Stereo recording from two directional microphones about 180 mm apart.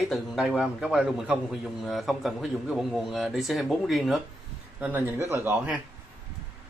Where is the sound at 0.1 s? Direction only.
5° right (ahead or behind).